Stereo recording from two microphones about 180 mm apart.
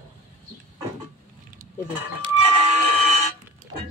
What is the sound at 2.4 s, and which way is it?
Printer, 35° right (ahead or behind).